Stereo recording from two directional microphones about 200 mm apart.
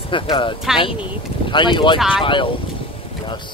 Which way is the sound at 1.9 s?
5° right (ahead or behind).